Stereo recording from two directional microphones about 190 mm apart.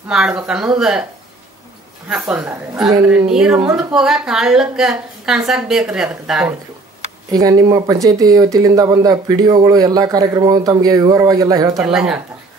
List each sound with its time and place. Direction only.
0.1 s a woman's voice: 5° right (ahead or behind)
2.0 s a woman's voice: 5° right (ahead or behind)
7.3 s speech: 20° right (ahead or behind)
11.8 s a woman's voice: 5° right (ahead or behind)